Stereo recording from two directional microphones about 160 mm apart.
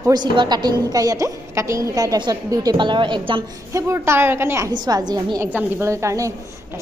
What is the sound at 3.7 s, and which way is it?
A woman's voice, 20° right (ahead or behind).